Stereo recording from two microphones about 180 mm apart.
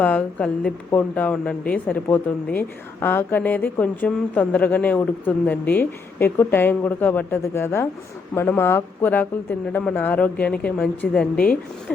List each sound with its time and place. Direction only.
0.0 s speech: 10° left (ahead or behind)